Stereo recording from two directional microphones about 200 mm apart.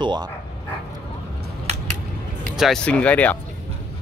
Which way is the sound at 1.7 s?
35° right (ahead or behind).